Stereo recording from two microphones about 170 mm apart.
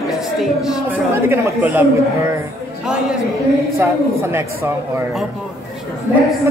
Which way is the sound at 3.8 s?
15° right (ahead or behind).